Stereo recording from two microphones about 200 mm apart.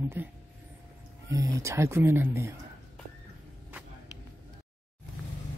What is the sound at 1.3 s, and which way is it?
Speech, 15° right (ahead or behind).